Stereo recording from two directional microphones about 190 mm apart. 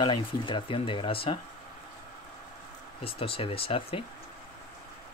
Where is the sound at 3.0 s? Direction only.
30° left (ahead or behind).